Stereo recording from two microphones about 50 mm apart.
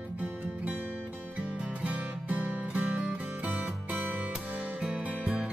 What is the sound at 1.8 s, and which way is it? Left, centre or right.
Music, right.